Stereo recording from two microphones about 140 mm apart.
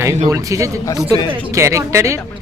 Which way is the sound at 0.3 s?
25° right (ahead or behind).